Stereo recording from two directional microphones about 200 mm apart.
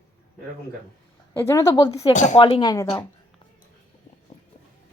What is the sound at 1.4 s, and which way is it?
Speech, 15° left (ahead or behind).